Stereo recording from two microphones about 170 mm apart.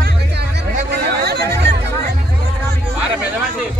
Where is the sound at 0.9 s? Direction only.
75° right (ahead or behind).